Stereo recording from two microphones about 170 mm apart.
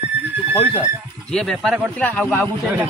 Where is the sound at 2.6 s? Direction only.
10° right (ahead or behind).